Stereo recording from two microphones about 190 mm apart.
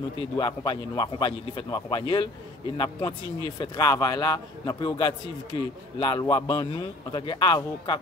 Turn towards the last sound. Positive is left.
turn(degrees=25)  # may be behind; listen again after turning